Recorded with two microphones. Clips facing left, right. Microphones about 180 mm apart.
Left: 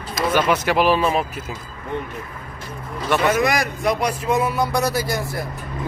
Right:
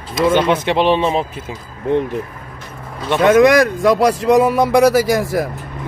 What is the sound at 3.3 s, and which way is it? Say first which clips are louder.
Speech: right 10 dB; 90° right.